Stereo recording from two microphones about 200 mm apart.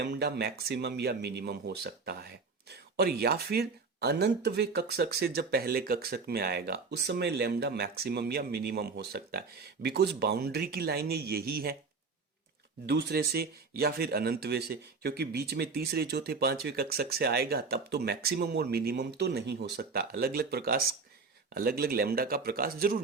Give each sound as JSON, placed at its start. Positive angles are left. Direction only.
{"t": 0.0, "sound": "speech", "side_deg": -55}
{"t": 12.8, "sound": "speech", "side_deg": -55}